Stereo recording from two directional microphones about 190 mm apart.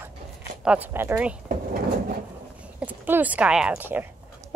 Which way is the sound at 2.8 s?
10° right (ahead or behind).